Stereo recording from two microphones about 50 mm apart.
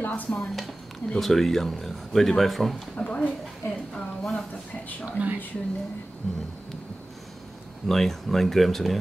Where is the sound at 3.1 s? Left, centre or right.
Left.